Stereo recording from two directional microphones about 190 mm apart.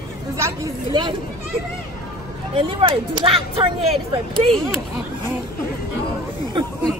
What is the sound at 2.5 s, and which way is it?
Speech, 25° right (ahead or behind).